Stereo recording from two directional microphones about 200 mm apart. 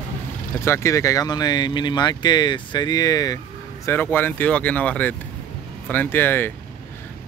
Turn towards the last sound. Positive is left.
turn(degrees=10)  # may be behind; listen again after turning